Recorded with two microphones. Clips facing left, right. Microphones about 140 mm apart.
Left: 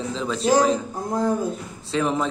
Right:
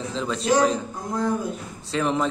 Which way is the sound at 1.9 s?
Centre (ahead or behind).